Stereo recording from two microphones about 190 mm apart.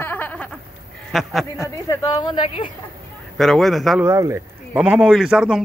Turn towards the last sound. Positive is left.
turn(degrees=-5)  # may be behind; listen again after turning